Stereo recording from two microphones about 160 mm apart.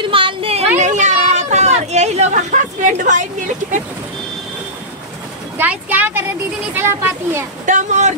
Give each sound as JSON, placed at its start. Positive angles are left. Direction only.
{"t": 0.1, "sound": "a sound", "side_deg": -35}
{"t": 5.6, "sound": "speech", "side_deg": -10}
{"t": 7.6, "sound": "speech", "side_deg": -50}